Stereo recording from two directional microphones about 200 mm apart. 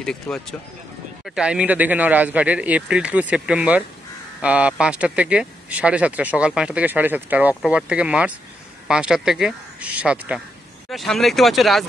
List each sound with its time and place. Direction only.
0.0 s speech: 5° left (ahead or behind)